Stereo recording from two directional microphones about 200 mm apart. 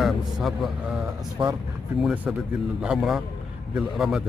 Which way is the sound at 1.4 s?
20° right (ahead or behind).